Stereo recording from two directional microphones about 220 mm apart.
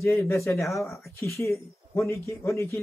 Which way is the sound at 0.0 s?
15° left (ahead or behind).